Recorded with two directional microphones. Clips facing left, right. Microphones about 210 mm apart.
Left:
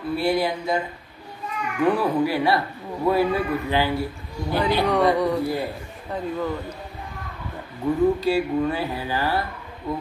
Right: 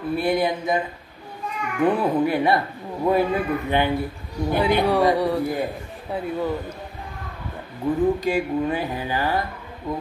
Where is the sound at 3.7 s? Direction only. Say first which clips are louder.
Right 2 dB; 20° right (ahead or behind).